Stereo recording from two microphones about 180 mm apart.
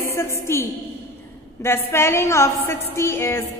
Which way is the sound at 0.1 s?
15° left (ahead or behind).